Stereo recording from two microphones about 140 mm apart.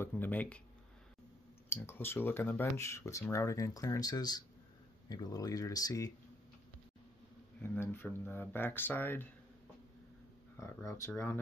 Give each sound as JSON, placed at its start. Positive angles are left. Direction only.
{"t": 0.0, "sound": "speech", "side_deg": 15}
{"t": 1.7, "sound": "speech", "side_deg": 15}
{"t": 7.6, "sound": "speech", "side_deg": 15}
{"t": 10.6, "sound": "speech", "side_deg": 20}